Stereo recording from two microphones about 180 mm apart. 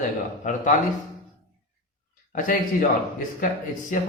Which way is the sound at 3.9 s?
45° left (ahead or behind).